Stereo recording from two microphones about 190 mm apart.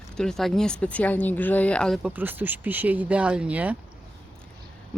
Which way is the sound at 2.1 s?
10° right (ahead or behind).